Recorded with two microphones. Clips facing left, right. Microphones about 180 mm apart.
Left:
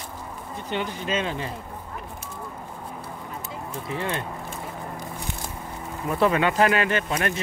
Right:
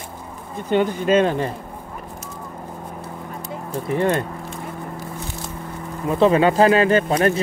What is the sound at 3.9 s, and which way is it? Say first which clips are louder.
Speech: right 10 dB; 50° right (ahead or behind).